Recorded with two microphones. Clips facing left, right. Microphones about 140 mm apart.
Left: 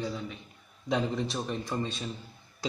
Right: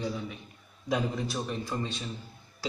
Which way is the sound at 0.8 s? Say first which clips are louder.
Left 1 dB; 5° right (ahead or behind).